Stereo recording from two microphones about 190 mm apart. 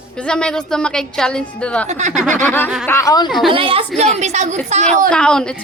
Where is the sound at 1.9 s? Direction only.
40° right (ahead or behind).